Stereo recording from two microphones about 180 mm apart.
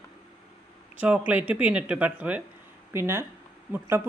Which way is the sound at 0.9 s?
10° right (ahead or behind).